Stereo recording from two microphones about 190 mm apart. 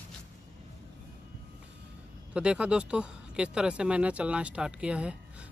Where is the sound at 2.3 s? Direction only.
5° right (ahead or behind).